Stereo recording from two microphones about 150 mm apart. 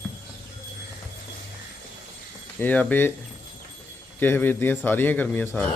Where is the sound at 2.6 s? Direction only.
10° left (ahead or behind).